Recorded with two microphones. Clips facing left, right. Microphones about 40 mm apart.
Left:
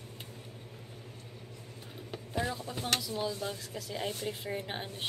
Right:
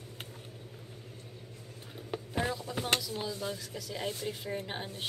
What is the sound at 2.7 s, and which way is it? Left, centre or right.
A woman's voice, centre.